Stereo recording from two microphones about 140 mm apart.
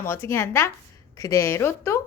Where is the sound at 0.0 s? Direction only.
20° left (ahead or behind).